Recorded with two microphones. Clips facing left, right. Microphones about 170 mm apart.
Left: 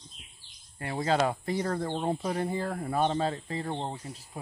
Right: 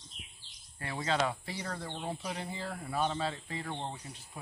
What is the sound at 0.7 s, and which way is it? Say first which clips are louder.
Speech: left 5 dB; 35° left (ahead or behind).